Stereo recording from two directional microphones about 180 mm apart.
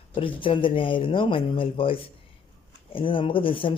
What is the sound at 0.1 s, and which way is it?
Speech, 30° left (ahead or behind).